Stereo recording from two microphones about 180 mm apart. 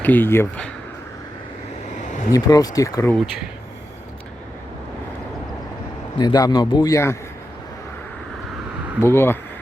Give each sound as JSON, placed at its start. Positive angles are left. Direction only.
{"t": 0.0, "sound": "speech", "side_deg": 10}
{"t": 2.0, "sound": "a sound", "side_deg": 45}
{"t": 2.3, "sound": "a man's voice", "side_deg": 20}
{"t": 6.1, "sound": "a man's voice", "side_deg": 20}
{"t": 9.0, "sound": "speech", "side_deg": 15}